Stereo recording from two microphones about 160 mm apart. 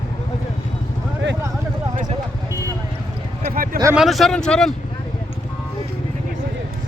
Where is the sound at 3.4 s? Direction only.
65° right (ahead or behind).